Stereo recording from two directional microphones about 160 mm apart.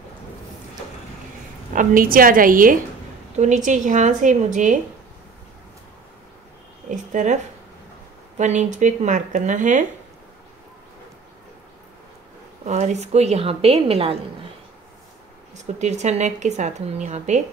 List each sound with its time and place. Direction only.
1.8 s a woman's voice: 60° right (ahead or behind)
3.3 s a woman's voice: 50° right (ahead or behind)
6.9 s a sound: 50° right (ahead or behind)
8.4 s a woman's voice: 50° right (ahead or behind)
12.6 s a woman's voice: 45° right (ahead or behind)
15.5 s a woman's voice: 45° right (ahead or behind)